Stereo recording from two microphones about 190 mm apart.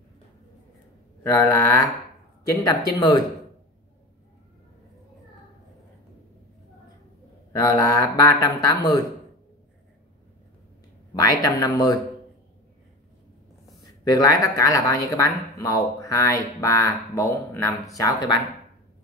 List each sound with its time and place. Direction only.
1.2 s speech: 15° left (ahead or behind)
7.5 s speech: 20° left (ahead or behind)
11.1 s speech: 20° left (ahead or behind)
14.0 s speech: 20° left (ahead or behind)